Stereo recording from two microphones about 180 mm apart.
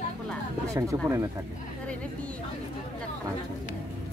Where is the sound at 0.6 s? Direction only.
15° right (ahead or behind).